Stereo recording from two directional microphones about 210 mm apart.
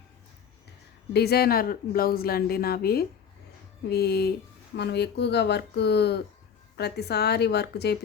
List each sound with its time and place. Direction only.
1.1 s speech: 50° left (ahead or behind)